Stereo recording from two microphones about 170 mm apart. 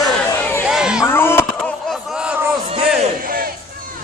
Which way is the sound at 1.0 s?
15° left (ahead or behind).